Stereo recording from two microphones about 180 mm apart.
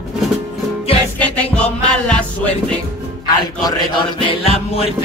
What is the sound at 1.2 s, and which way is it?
Music, 5° left (ahead or behind).